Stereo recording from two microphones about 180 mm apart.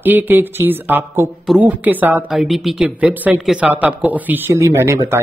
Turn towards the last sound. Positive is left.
turn(degrees=-15)  # may be behind; listen again after turning